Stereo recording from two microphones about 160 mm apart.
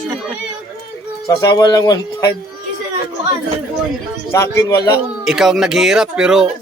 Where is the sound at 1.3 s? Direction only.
25° left (ahead or behind).